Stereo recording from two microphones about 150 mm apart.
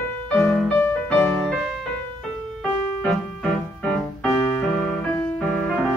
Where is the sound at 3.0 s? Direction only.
5° left (ahead or behind).